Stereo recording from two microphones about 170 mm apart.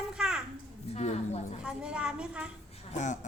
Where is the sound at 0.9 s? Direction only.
40° left (ahead or behind).